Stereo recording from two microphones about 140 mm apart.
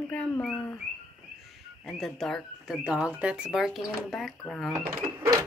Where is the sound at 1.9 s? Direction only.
Centre (ahead or behind).